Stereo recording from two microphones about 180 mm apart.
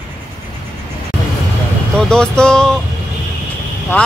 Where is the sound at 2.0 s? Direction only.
5° left (ahead or behind).